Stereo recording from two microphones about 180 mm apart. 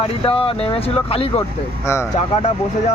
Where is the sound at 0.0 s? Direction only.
30° left (ahead or behind).